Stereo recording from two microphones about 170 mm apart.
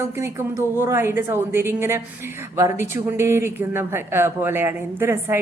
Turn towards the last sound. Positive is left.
turn(degrees=-15)  # may be behind; listen again after turning